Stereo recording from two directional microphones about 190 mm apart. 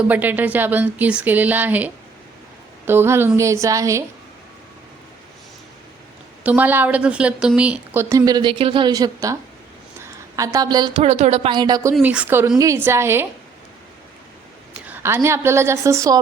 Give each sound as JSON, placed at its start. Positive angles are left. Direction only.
{"t": 0.0, "sound": "speech", "side_deg": -10}
{"t": 6.4, "sound": "speech", "side_deg": -10}
{"t": 8.0, "sound": "a woman's voice", "side_deg": -20}
{"t": 10.0, "sound": "a sound", "side_deg": -15}
{"t": 11.0, "sound": "a woman's voice", "side_deg": -35}
{"t": 11.9, "sound": "speech", "side_deg": -5}
{"t": 14.7, "sound": "a woman's voice", "side_deg": -10}